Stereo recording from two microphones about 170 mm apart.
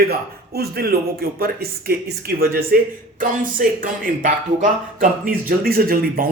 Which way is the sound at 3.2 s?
50° right (ahead or behind).